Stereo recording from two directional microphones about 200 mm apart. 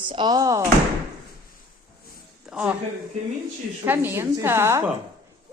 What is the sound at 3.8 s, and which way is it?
A woman's voice, 10° right (ahead or behind).